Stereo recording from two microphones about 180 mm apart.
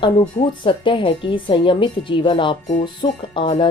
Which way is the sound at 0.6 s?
30° left (ahead or behind).